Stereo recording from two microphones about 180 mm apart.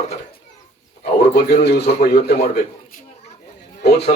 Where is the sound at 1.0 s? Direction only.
65° left (ahead or behind).